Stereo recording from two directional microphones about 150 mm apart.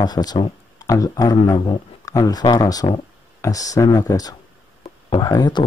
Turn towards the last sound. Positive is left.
turn(degrees=30)  # may be behind; listen again after turning